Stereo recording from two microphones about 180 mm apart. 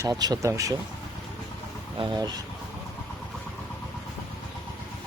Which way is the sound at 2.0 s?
25° right (ahead or behind).